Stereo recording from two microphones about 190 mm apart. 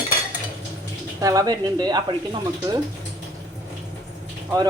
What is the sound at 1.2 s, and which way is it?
Speech, 20° right (ahead or behind).